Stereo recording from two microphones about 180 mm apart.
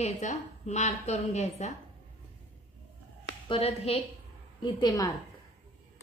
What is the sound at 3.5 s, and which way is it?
Speech, 35° left (ahead or behind).